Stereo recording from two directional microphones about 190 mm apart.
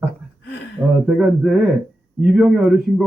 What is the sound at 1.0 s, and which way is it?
Speech, centre (ahead or behind).